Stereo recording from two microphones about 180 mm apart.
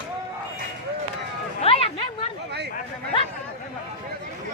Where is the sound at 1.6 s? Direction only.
35° left (ahead or behind).